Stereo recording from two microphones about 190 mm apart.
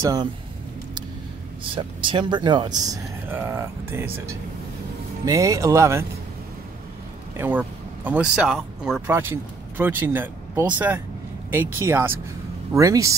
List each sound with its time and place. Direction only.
0.0 s speech: 20° right (ahead or behind)
1.8 s speech: 25° right (ahead or behind)
7.3 s speech: 10° right (ahead or behind)